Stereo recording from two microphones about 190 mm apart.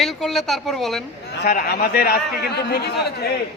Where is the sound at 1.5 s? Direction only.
55° left (ahead or behind).